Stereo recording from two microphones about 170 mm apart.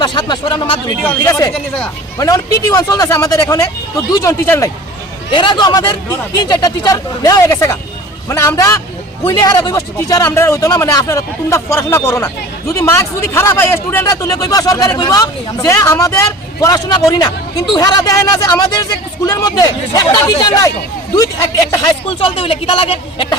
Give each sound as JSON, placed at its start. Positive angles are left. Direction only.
{"t": 0.0, "sound": "speech", "side_deg": 25}
{"t": 1.0, "sound": "speech", "side_deg": 15}
{"t": 5.3, "sound": "speech", "side_deg": 30}
{"t": 22.4, "sound": "speech", "side_deg": 30}